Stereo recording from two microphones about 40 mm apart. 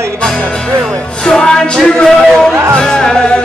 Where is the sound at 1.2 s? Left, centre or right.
Centre.